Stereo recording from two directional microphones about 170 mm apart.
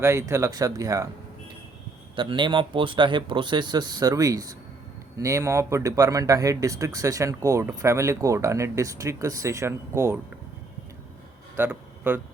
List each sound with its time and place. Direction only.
0.0 s speech: 15° right (ahead or behind)
2.1 s speech: 30° right (ahead or behind)
11.5 s a sound: 10° right (ahead or behind)